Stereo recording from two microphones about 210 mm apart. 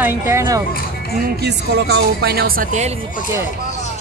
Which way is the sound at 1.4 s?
55° right (ahead or behind).